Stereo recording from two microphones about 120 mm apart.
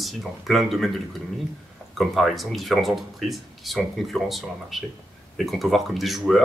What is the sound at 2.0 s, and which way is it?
Speech, centre (ahead or behind).